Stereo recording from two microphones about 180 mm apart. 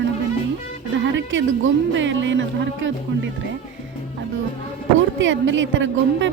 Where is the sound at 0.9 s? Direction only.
90° right.